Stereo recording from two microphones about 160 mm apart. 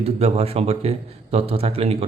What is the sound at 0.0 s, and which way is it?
A man's voice, 40° right (ahead or behind).